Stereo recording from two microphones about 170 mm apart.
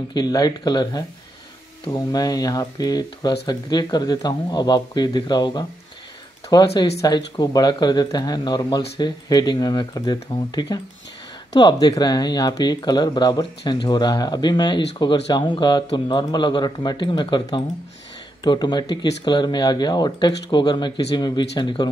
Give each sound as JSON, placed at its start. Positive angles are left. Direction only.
{"t": 0.1, "sound": "speech", "side_deg": 25}